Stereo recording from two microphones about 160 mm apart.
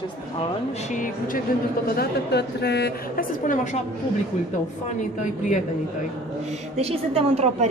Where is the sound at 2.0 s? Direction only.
90° left; by 3.8 s 55° left (ahead or behind).